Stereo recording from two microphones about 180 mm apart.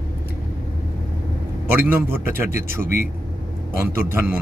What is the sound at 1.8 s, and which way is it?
A man's voice, 10° right (ahead or behind).